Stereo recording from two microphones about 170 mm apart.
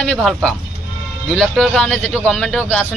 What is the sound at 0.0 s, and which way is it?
Speech, 5° left (ahead or behind).